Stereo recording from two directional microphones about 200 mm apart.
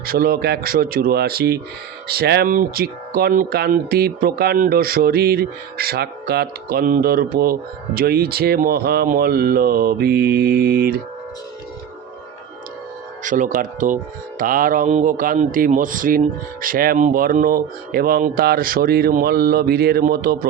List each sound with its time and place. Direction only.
0.0 s speech: 50° right (ahead or behind)
13.2 s speech: 40° right (ahead or behind)